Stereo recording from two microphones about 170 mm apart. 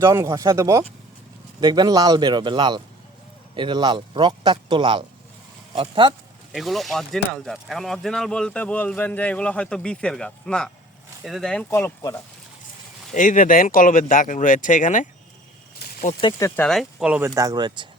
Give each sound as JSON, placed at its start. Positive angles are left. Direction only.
{"t": 0.0, "sound": "speech", "side_deg": -20}
{"t": 6.5, "sound": "speech", "side_deg": 0}
{"t": 11.7, "sound": "speech", "side_deg": 15}
{"t": 13.1, "sound": "speech", "side_deg": 50}
{"t": 15.8, "sound": "snake", "side_deg": 70}
{"t": 16.2, "sound": "speech", "side_deg": 30}
{"t": 16.6, "sound": "speech", "side_deg": 0}
{"t": 17.2, "sound": "speech", "side_deg": -20}